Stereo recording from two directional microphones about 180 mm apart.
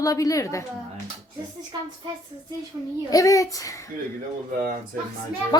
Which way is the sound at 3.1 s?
20° left (ahead or behind).